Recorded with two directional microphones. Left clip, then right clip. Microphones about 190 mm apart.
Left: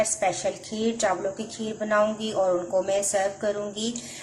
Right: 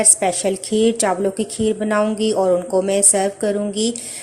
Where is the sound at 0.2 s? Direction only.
40° right (ahead or behind).